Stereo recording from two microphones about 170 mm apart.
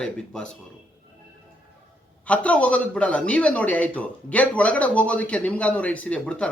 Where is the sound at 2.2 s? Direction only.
10° left (ahead or behind).